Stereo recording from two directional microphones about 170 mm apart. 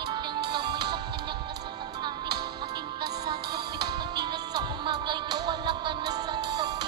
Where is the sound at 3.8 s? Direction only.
25° right (ahead or behind).